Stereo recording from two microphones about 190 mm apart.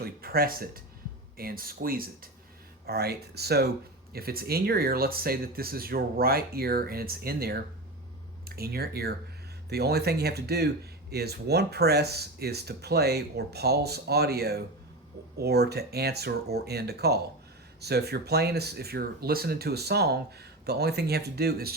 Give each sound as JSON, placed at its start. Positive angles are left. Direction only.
{"t": 0.0, "sound": "speech", "side_deg": -50}